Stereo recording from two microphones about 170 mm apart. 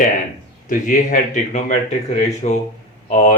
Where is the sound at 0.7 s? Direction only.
50° left (ahead or behind).